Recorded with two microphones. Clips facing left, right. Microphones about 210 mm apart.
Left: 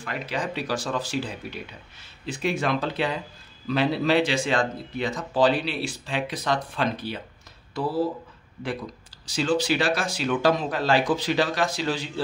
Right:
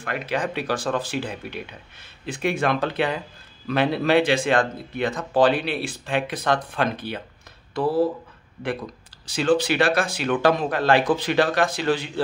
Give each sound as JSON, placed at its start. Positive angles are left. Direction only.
{"t": 0.0, "sound": "speech", "side_deg": -55}
{"t": 9.2, "sound": "speech", "side_deg": -55}